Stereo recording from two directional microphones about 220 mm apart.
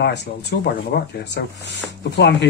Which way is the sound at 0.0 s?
50° left (ahead or behind).